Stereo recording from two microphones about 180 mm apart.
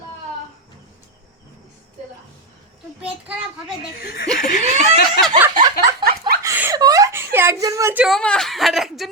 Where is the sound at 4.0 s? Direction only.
55° left (ahead or behind).